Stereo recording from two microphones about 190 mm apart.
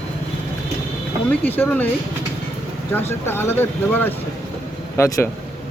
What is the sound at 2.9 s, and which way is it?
Speech, 10° left (ahead or behind).